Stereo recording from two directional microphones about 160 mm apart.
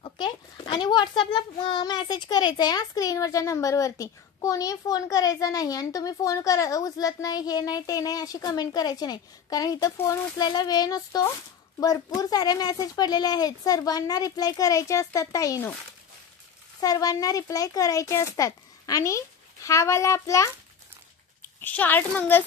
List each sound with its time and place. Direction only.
0.0 s a child's voice: 30° left (ahead or behind)
16.8 s a child's voice: 25° left (ahead or behind)